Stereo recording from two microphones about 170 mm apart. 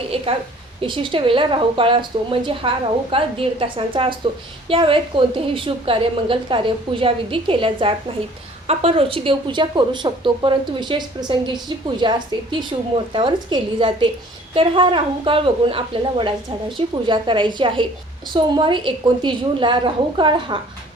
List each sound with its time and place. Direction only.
0.8 s a woman's voice: 30° right (ahead or behind)